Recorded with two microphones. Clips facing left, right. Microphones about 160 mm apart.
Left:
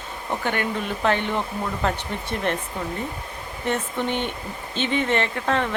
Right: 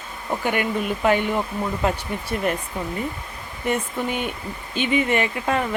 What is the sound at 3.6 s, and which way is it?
Speech, 10° right (ahead or behind).